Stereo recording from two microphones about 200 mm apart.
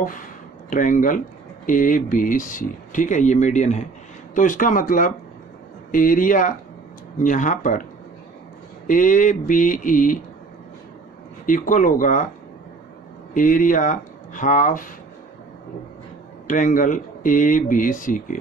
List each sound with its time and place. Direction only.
0.7 s speech: 40° left (ahead or behind)
8.8 s speech: 40° left (ahead or behind)
11.4 s speech: 40° left (ahead or behind)
13.3 s speech: 40° left (ahead or behind)
16.4 s speech: 40° left (ahead or behind)